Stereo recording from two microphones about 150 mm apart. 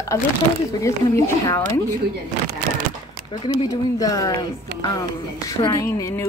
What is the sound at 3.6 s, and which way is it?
Speech, 25° left (ahead or behind).